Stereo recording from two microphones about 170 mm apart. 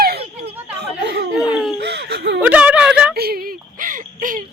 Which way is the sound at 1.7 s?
80° right.